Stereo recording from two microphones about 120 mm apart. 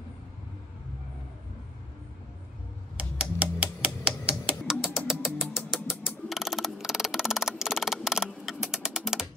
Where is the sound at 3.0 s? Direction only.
10° right (ahead or behind).